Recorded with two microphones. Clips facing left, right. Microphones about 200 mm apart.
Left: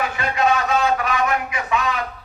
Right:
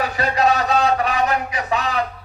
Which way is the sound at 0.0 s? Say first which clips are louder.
Right 2 dB; 35° right (ahead or behind).